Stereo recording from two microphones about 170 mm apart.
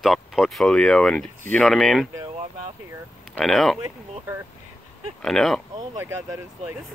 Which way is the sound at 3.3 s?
Centre (ahead or behind).